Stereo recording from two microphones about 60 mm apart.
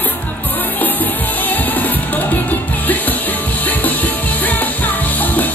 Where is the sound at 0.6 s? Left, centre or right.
Left.